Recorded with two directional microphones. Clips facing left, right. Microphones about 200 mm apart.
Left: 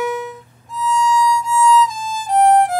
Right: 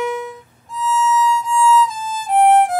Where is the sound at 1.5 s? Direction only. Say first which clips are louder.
Even; 5° right (ahead or behind).